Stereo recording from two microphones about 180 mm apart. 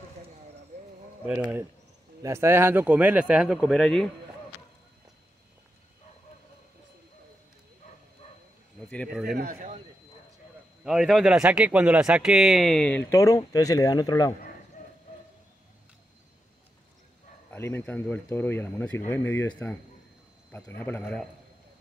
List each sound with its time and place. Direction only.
2.2 s speech: 15° right (ahead or behind); by 4.1 s centre (ahead or behind)
8.7 s speech: 5° left (ahead or behind)
9.3 s speech: 55° right (ahead or behind)
10.8 s a man's voice: centre (ahead or behind); by 14.3 s 20° left (ahead or behind)
17.5 s a man's voice: 10° left (ahead or behind)